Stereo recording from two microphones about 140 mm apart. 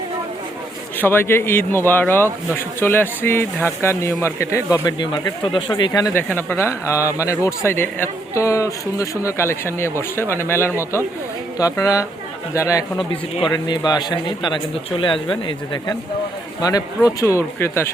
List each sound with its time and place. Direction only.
0.9 s a man's voice: 15° left (ahead or behind)